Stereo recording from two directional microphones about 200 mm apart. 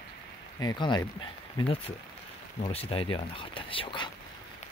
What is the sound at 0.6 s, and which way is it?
Speech, 20° left (ahead or behind).